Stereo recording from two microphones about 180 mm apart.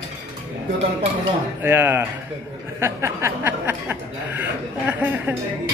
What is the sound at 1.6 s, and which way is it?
A man's voice, 10° right (ahead or behind).